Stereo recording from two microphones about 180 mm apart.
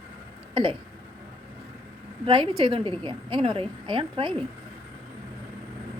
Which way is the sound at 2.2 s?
30° right (ahead or behind).